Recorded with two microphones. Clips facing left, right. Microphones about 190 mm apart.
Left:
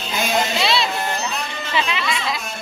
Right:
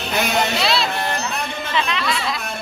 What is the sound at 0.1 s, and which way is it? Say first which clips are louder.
Speech: right 1 dB; 65° right (ahead or behind).